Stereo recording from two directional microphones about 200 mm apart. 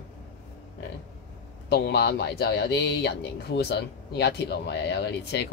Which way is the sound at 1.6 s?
55° left (ahead or behind).